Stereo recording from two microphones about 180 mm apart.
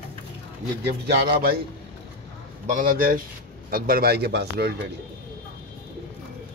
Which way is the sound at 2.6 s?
50° right (ahead or behind).